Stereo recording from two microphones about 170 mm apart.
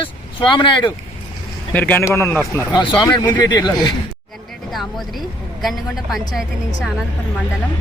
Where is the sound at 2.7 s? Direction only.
30° left (ahead or behind).